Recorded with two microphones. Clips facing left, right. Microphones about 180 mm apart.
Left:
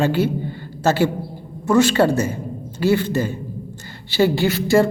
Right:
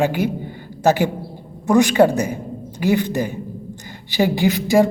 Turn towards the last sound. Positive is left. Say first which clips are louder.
# right 1 dB
turn(degrees=-15)  # may be behind; listen again after turning